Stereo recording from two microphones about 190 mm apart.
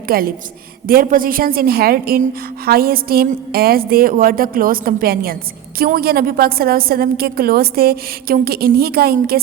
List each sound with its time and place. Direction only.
0.1 s a woman's voice: 50° right (ahead or behind)